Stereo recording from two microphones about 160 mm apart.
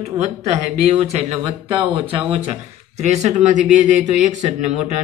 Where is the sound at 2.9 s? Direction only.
45° right (ahead or behind).